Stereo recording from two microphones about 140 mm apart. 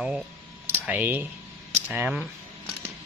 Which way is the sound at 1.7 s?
15° right (ahead or behind).